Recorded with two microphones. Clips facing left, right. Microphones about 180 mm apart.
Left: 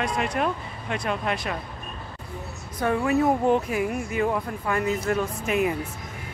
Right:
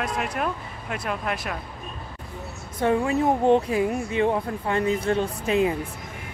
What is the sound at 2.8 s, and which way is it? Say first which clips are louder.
Speech: even; 25° right (ahead or behind).